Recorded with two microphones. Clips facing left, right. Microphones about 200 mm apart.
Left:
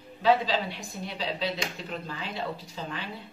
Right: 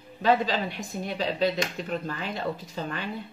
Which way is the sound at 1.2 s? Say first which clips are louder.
Right 6 dB; 50° right (ahead or behind).